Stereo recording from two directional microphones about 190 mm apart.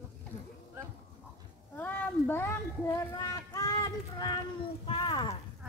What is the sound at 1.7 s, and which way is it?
Speech, 10° left (ahead or behind).